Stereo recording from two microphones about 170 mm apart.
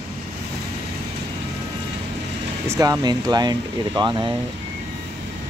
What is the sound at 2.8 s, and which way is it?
Speech, 25° right (ahead or behind).